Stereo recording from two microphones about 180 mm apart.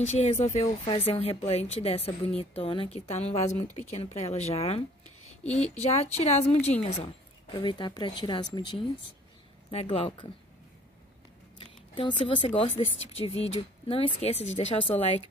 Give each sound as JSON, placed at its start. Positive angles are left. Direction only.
{"t": 0.1, "sound": "a woman's voice", "side_deg": 35}
{"t": 11.6, "sound": "speech", "side_deg": 25}